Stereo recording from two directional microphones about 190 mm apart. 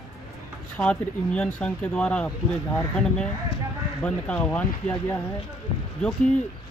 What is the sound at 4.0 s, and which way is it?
Speech, 5° left (ahead or behind).